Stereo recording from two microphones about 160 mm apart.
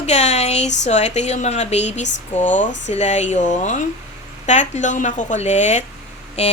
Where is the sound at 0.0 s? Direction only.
45° left (ahead or behind).